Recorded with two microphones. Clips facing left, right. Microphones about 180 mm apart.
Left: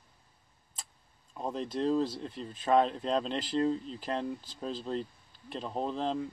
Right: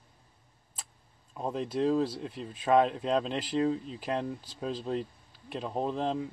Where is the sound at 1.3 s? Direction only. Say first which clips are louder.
Right 2 dB; 5° right (ahead or behind).